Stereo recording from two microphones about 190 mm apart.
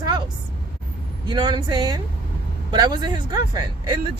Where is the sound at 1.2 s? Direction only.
25° right (ahead or behind).